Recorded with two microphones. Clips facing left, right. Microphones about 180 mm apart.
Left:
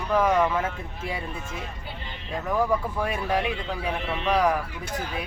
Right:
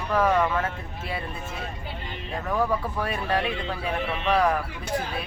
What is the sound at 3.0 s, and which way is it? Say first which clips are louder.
Speech: left 1 dB; 15° left (ahead or behind).